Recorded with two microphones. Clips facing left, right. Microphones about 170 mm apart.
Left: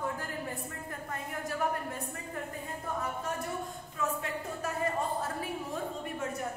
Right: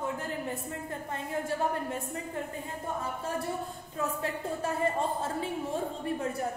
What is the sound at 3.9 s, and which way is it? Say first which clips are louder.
A woman's voice: right 2 dB; 35° right (ahead or behind).